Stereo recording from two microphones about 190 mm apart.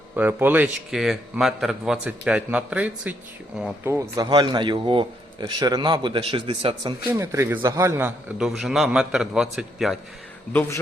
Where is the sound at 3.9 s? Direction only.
15° right (ahead or behind).